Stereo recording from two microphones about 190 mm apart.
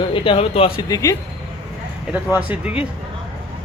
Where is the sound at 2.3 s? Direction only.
5° right (ahead or behind).